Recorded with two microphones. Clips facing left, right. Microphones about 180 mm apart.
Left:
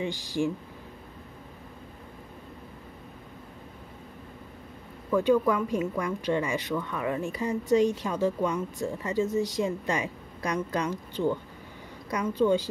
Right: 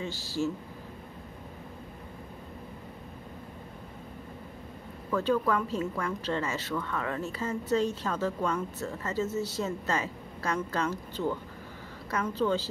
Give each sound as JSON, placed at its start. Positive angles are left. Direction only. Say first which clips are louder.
{"t": 0.0, "sound": "speech", "louder": "left 3 dB", "side_deg": 15}
{"t": 5.1, "sound": "speech", "louder": "left 4 dB", "side_deg": 15}
{"t": 12.4, "sound": "speech", "louder": "left 5 dB", "side_deg": 15}